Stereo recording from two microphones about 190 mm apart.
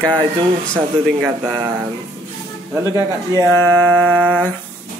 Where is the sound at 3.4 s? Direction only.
10° left (ahead or behind).